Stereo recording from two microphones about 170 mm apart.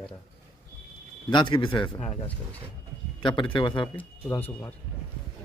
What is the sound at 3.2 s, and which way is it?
Speech, 30° left (ahead or behind).